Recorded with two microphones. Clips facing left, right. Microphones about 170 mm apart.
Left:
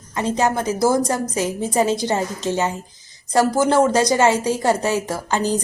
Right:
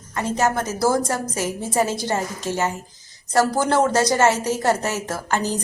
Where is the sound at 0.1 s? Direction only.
15° left (ahead or behind).